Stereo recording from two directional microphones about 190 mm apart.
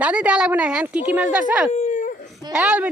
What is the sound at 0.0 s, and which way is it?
Speech, 5° right (ahead or behind).